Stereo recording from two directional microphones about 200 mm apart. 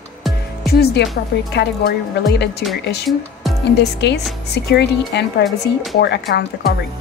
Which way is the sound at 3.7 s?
60° left (ahead or behind).